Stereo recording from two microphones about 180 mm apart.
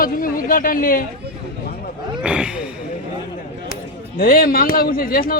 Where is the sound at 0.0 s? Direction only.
50° left (ahead or behind).